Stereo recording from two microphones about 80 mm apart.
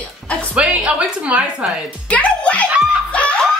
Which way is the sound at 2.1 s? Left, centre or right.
Centre.